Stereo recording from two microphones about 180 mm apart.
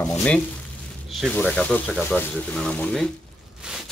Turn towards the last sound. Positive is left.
turn(degrees=-5)  # may be behind; listen again after turning